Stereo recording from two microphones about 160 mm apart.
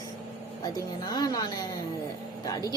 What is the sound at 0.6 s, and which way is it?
A woman's voice, 25° left (ahead or behind).